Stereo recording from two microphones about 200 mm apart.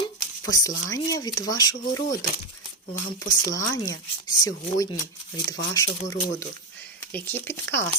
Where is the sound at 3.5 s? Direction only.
15° left (ahead or behind).